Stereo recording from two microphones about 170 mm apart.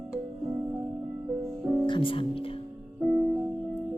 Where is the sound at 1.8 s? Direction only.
30° left (ahead or behind).